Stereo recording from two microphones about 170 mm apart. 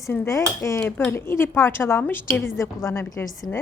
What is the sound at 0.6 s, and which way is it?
A woman's voice, 15° left (ahead or behind).